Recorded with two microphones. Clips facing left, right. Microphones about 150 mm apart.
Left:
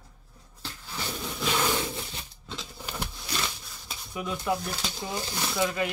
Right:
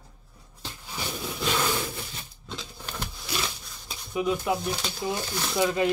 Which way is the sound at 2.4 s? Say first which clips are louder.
Right 1 dB; 5° left (ahead or behind).